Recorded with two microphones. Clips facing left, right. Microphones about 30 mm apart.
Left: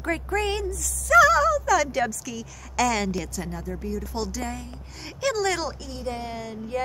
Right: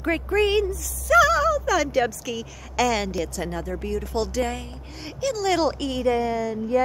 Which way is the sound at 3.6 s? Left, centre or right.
Right.